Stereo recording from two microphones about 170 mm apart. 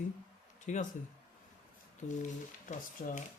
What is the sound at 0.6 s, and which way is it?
Speech, 45° left (ahead or behind).